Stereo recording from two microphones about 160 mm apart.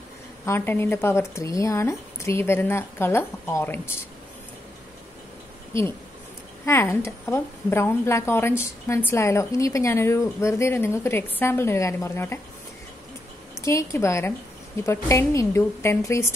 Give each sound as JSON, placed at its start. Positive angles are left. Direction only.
{"t": 0.5, "sound": "a woman's voice", "side_deg": 15}
{"t": 6.6, "sound": "a woman's voice", "side_deg": 15}
{"t": 13.6, "sound": "a woman's voice", "side_deg": 20}